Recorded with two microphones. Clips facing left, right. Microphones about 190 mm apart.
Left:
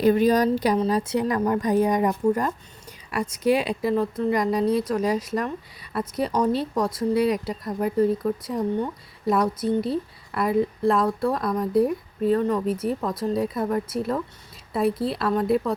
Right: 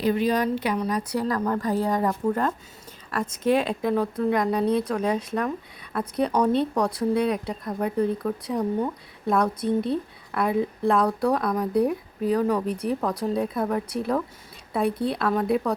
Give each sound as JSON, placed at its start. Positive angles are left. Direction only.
{"t": 0.0, "sound": "a woman's voice", "side_deg": 45}
{"t": 0.8, "sound": "a woman's voice", "side_deg": 25}